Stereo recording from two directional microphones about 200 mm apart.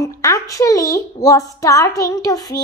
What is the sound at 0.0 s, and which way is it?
A woman's voice, 15° left (ahead or behind).